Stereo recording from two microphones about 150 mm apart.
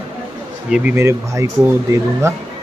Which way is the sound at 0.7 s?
10° right (ahead or behind).